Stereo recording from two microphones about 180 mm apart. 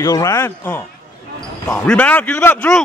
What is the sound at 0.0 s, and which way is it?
Speech, 15° left (ahead or behind).